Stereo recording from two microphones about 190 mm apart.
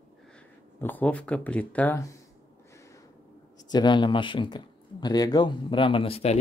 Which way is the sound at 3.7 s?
25° left (ahead or behind).